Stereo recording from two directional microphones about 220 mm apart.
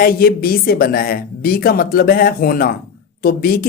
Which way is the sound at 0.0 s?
40° left (ahead or behind).